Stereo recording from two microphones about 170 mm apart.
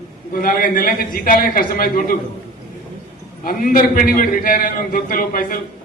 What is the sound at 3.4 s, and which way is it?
A man's voice, 55° left (ahead or behind).